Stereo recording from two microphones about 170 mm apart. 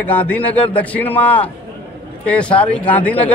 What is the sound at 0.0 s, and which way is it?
A man's voice, 10° left (ahead or behind).